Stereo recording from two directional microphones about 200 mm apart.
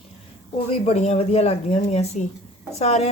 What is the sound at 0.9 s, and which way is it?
Speech, 35° left (ahead or behind).